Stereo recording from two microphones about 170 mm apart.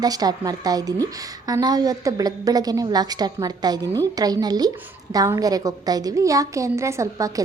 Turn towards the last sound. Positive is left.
turn(degrees=-20)  # may be behind; listen again after turning